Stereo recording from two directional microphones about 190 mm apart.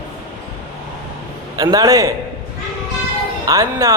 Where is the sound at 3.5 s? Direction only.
15° right (ahead or behind).